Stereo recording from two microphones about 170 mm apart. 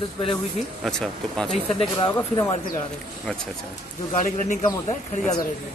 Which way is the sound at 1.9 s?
20° left (ahead or behind).